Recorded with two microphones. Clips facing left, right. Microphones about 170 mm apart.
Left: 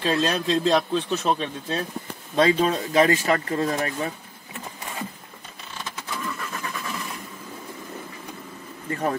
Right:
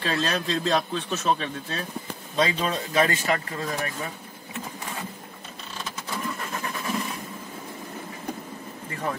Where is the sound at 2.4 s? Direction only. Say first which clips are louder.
Left 5 dB; 45° left (ahead or behind).